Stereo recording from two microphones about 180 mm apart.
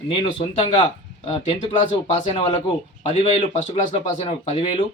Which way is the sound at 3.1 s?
40° left (ahead or behind).